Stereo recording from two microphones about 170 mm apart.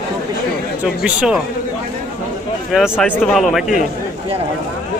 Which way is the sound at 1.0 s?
5° right (ahead or behind).